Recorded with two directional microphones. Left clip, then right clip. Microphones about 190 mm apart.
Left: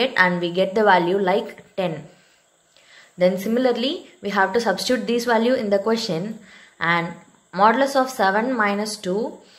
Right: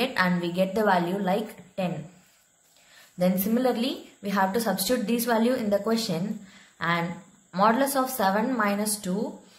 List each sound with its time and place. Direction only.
0.0 s a woman's voice: 15° left (ahead or behind)
3.2 s a woman's voice: 15° left (ahead or behind)